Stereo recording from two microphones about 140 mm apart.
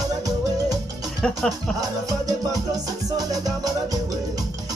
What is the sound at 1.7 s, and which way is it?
Music, 25° right (ahead or behind).